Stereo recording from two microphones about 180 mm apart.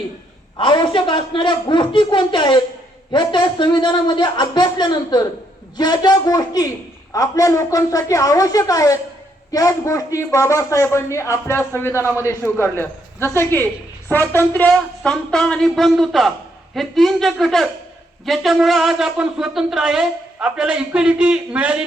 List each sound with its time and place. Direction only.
0.5 s a man's voice: 25° left (ahead or behind); by 21.8 s 5° right (ahead or behind)